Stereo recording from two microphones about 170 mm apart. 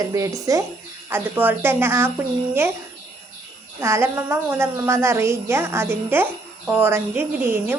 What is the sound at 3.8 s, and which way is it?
A woman's voice, 15° right (ahead or behind).